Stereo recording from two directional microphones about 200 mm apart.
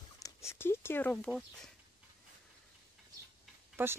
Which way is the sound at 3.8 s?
10° right (ahead or behind).